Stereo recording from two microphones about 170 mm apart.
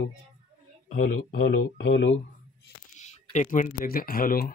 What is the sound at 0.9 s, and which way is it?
Speech, 60° left (ahead or behind).